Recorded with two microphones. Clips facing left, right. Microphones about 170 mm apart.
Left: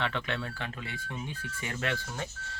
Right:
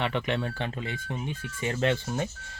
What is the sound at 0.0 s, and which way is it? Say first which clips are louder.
Speech: right 5 dB; 15° right (ahead or behind).